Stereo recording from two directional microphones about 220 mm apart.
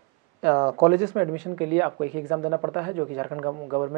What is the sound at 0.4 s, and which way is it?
Speech, 20° right (ahead or behind).